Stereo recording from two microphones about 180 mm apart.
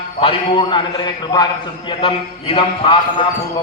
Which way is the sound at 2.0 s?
30° left (ahead or behind).